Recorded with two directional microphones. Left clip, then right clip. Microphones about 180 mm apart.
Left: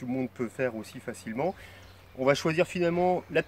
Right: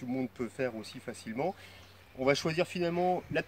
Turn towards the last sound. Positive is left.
turn(degrees=25)  # may be behind; listen again after turning